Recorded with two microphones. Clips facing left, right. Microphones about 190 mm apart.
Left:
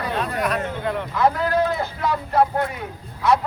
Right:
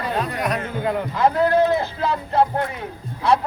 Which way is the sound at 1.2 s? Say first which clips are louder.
Right 3 dB; 25° right (ahead or behind).